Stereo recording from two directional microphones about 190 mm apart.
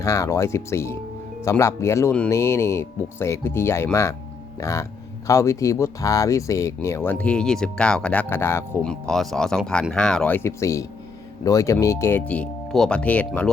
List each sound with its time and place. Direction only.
0.0 s speech: 15° left (ahead or behind)